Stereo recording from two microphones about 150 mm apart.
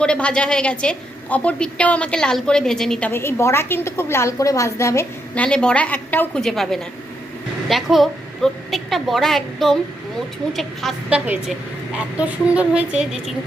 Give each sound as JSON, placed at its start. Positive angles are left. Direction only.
{"t": 0.0, "sound": "a woman's voice", "side_deg": 5}
{"t": 3.1, "sound": "a woman's voice", "side_deg": 15}
{"t": 5.3, "sound": "a woman's voice", "side_deg": 5}